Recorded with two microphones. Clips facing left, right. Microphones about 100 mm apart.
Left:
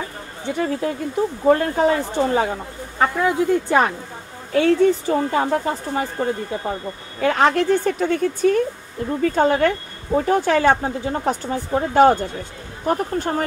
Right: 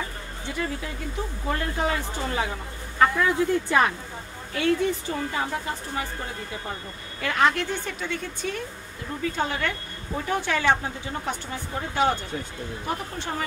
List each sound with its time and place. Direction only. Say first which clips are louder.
0.6 s speech: left 9 dB; 45° left (ahead or behind)